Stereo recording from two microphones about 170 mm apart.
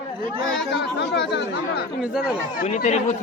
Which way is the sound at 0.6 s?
90° left.